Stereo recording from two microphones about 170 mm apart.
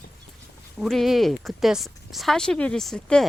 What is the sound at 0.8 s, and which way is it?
Speech, centre (ahead or behind).